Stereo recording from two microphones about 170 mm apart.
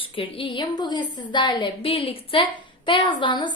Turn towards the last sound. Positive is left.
turn(degrees=25)  # may be behind; listen again after turning